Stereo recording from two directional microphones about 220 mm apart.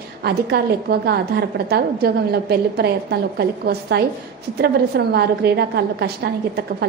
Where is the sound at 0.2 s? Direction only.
45° right (ahead or behind).